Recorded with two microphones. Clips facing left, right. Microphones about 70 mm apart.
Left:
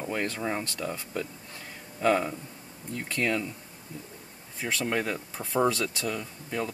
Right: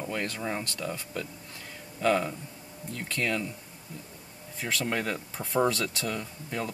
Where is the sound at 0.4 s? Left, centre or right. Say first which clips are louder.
Left 2 dB; centre.